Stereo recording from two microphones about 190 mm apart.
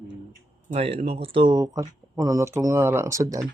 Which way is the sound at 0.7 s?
35° right (ahead or behind).